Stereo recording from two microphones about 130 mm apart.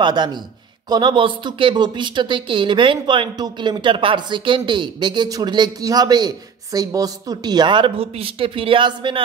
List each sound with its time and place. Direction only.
0.0 s speech: 35° right (ahead or behind)